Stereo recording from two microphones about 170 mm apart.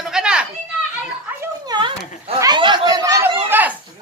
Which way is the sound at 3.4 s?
10° right (ahead or behind).